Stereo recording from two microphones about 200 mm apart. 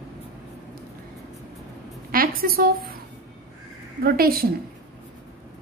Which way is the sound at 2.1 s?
45° right (ahead or behind).